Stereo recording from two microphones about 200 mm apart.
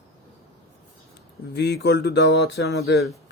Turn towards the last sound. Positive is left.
turn(degrees=55)  # may be behind; listen again after turning